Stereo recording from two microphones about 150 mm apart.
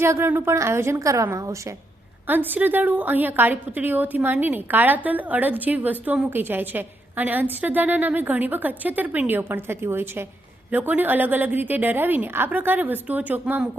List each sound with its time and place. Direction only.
0.0 s a woman's voice: 15° right (ahead or behind)